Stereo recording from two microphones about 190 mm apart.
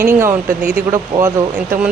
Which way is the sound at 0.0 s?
10° right (ahead or behind).